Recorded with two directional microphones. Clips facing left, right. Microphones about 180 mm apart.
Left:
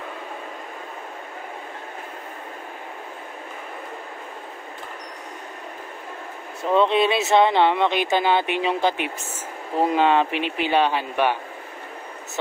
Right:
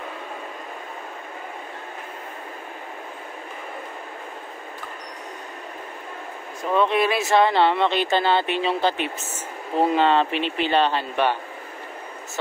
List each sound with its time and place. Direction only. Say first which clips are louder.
6.7 s speech: left 2 dB; 25° left (ahead or behind)